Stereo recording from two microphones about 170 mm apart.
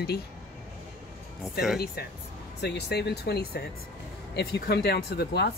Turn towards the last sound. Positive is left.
turn(degrees=65)  # may be behind; listen again after turning